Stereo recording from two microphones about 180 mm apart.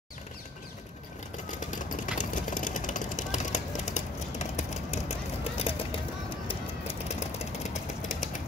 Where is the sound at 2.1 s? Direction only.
45° left (ahead or behind).